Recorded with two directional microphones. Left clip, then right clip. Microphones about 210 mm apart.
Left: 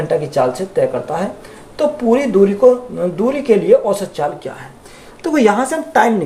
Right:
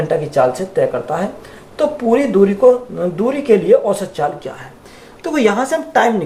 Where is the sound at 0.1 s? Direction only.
15° left (ahead or behind).